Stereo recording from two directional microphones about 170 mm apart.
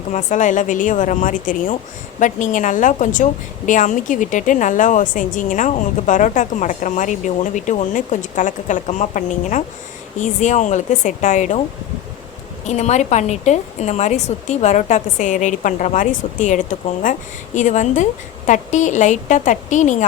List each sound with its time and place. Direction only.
0.1 s a woman's voice: 45° left (ahead or behind)
12.6 s a woman's voice: 40° left (ahead or behind)